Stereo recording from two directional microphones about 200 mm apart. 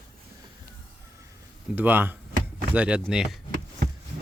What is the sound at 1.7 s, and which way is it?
A man's voice, 10° right (ahead or behind).